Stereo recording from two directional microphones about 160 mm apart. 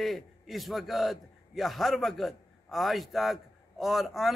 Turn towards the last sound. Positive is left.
turn(degrees=0)  # may be behind; listen again after turning